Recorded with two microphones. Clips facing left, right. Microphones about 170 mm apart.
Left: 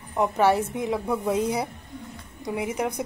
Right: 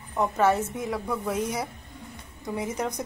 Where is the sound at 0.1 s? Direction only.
15° left (ahead or behind).